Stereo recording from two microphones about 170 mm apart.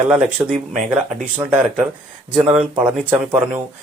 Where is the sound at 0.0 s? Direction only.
10° right (ahead or behind).